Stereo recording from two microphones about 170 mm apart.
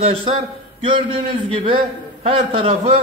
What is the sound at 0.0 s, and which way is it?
A man's voice, 30° right (ahead or behind).